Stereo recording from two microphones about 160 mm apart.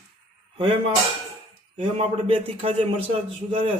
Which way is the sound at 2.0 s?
40° right (ahead or behind).